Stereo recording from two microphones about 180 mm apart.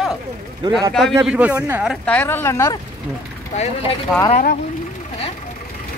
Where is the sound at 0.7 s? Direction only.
20° right (ahead or behind).